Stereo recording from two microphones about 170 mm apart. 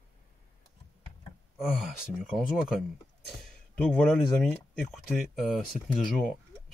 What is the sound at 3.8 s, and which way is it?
Speech, 5° left (ahead or behind).